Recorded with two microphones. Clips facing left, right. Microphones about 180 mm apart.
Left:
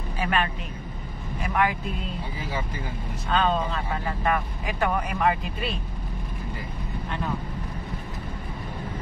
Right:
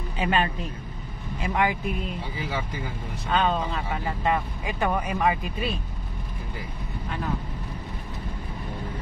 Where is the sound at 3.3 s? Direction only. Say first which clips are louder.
Even; 15° right (ahead or behind).